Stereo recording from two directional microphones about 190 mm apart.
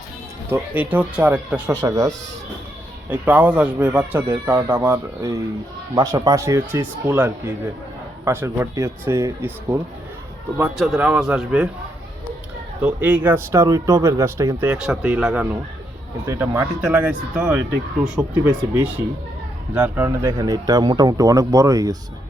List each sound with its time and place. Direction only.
0.5 s speech: 10° right (ahead or behind)
3.1 s a man's voice: 10° right (ahead or behind)
12.8 s a man's voice: 5° right (ahead or behind)
19.7 s speech: 10° right (ahead or behind)